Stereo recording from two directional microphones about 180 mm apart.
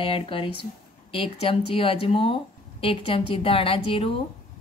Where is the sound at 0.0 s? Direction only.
30° left (ahead or behind).